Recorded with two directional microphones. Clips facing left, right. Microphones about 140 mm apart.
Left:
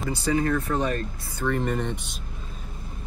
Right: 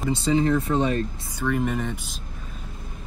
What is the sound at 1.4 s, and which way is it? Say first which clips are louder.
Speech: right 1 dB; 5° right (ahead or behind).